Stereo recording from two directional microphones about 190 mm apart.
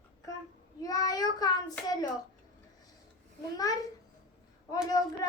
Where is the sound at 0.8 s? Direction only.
20° left (ahead or behind).